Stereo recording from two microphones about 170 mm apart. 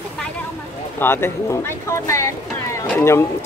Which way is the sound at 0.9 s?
15° left (ahead or behind).